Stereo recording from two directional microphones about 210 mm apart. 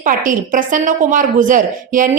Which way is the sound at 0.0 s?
40° right (ahead or behind).